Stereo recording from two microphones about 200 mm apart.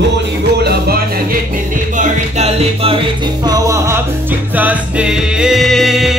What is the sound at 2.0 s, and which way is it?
Music, 35° right (ahead or behind).